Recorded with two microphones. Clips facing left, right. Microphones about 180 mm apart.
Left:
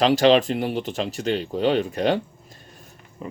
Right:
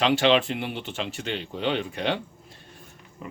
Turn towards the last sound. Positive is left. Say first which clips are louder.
# left 4 dB
turn(degrees=35)  # may be behind; listen again after turning